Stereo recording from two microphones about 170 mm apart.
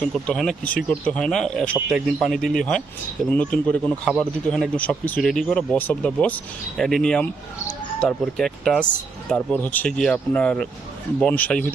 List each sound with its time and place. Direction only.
0.1 s speech: 5° left (ahead or behind)